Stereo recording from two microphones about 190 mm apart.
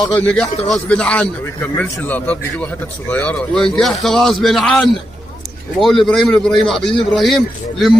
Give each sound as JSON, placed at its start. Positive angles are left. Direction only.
{"t": 0.0, "sound": "a man's voice", "side_deg": 5}
{"t": 6.9, "sound": "a man's voice", "side_deg": 25}
{"t": 7.2, "sound": "speech", "side_deg": 0}